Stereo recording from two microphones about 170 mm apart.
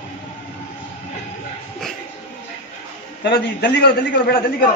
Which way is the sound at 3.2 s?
65° left (ahead or behind).